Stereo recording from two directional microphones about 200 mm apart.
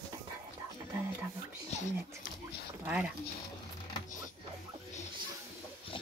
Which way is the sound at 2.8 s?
5° right (ahead or behind).